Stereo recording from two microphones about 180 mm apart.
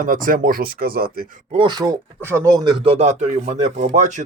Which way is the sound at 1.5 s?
25° right (ahead or behind).